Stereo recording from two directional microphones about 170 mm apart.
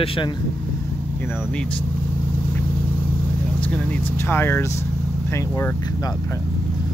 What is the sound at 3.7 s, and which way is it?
Speech, 10° left (ahead or behind).